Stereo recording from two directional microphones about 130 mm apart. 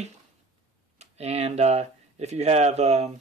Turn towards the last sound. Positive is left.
turn(degrees=-55)  # may be behind; listen again after turning